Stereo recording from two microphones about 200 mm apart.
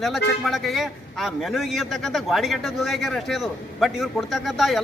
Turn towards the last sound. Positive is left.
turn(degrees=0)  # may be behind; listen again after turning